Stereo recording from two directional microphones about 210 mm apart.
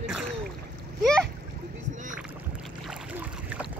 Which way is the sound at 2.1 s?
5° right (ahead or behind).